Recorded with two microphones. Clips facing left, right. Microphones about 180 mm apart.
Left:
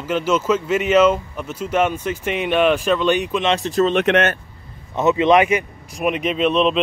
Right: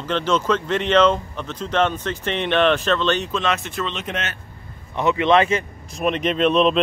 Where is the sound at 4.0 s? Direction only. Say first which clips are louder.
Left 12 dB; 60° left (ahead or behind).